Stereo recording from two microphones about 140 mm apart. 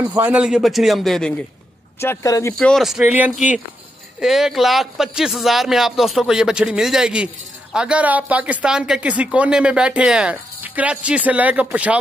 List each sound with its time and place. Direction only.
0.1 s a man's voice: 10° right (ahead or behind)
2.0 s speech: 20° left (ahead or behind)
2.6 s a man's voice: centre (ahead or behind)